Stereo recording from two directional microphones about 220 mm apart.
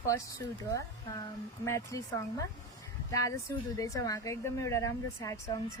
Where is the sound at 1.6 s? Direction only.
15° left (ahead or behind).